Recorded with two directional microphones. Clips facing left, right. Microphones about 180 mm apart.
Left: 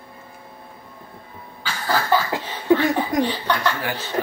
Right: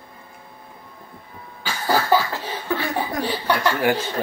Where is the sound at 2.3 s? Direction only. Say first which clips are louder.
Left 7 dB; 15° left (ahead or behind).